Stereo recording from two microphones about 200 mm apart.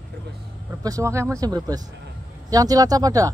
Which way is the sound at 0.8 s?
15° right (ahead or behind).